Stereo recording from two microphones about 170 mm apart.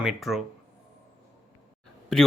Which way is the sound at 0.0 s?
Centre (ahead or behind).